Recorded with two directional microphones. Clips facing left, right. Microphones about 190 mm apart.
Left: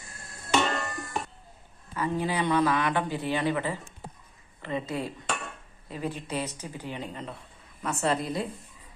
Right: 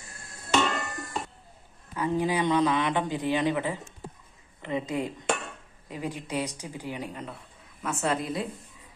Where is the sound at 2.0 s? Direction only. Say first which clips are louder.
Right 2 dB; 15° right (ahead or behind).